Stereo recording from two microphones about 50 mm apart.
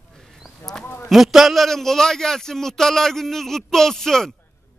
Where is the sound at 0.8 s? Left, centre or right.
Left.